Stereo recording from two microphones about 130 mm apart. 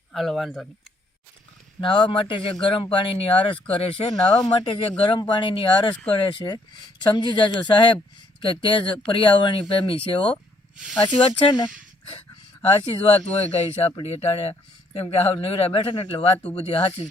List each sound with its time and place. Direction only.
0.1 s speech: centre (ahead or behind)
1.8 s a man's voice: 40° left (ahead or behind)
4.1 s speech: 5° left (ahead or behind)
4.6 s a man's voice: 45° left (ahead or behind)
5.9 s speech: 10° left (ahead or behind)
6.3 s speech: 35° left (ahead or behind)
12.8 s a man's voice: 45° left (ahead or behind)